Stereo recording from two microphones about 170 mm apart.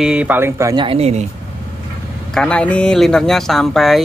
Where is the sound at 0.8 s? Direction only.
35° right (ahead or behind).